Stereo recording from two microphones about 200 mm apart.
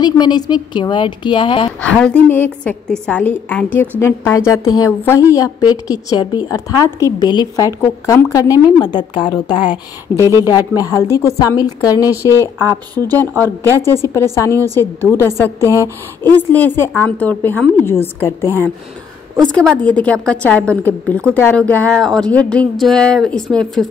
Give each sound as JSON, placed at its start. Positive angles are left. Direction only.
{"t": 0.0, "sound": "speech", "side_deg": 20}
{"t": 1.8, "sound": "a woman's voice", "side_deg": 5}
{"t": 15.7, "sound": "speech", "side_deg": -15}
{"t": 16.3, "sound": "a woman's voice", "side_deg": 10}
{"t": 19.5, "sound": "a woman's voice", "side_deg": 5}